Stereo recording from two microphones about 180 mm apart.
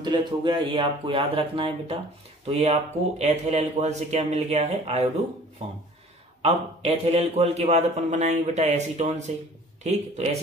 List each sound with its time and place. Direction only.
0.0 s a man's voice: 25° right (ahead or behind)
6.4 s a man's voice: 35° right (ahead or behind)